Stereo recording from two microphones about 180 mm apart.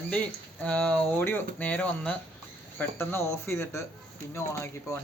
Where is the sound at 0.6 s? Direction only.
5° left (ahead or behind).